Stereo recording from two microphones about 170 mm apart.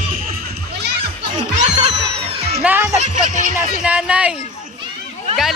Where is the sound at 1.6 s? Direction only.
40° right (ahead or behind).